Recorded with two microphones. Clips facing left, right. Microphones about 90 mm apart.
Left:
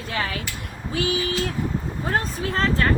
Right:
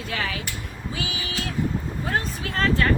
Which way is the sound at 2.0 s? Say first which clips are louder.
Left 3 dB; 35° left (ahead or behind).